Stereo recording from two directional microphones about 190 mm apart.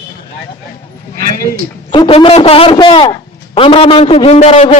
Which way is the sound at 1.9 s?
25° left (ahead or behind).